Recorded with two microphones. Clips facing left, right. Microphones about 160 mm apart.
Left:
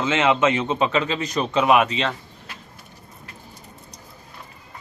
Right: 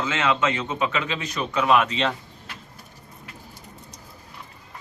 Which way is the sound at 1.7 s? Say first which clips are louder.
Left 2 dB; 5° left (ahead or behind).